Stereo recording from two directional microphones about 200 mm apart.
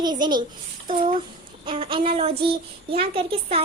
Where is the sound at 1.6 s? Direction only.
25° right (ahead or behind).